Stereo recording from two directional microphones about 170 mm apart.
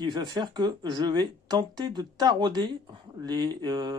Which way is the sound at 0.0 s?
25° right (ahead or behind).